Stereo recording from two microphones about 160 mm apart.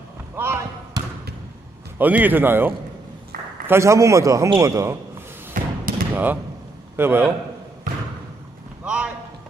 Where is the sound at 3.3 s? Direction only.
60° right (ahead or behind).